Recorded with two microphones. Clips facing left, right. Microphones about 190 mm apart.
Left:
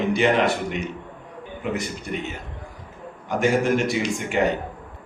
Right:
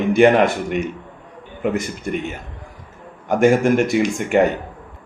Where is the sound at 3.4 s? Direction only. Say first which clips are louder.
Right 6 dB; 50° right (ahead or behind).